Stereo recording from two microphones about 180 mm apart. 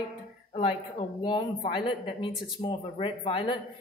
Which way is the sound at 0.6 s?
30° left (ahead or behind).